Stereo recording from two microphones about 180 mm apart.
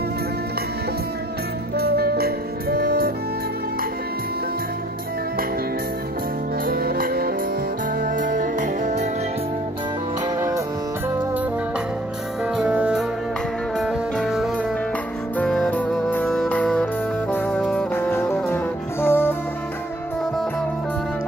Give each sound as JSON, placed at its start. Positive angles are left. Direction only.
{"t": 1.8, "sound": "music", "side_deg": -60}
{"t": 6.6, "sound": "music", "side_deg": -55}
{"t": 12.5, "sound": "music", "side_deg": -5}